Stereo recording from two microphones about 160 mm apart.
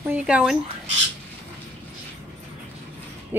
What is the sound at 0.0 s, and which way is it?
Speech, 10° right (ahead or behind).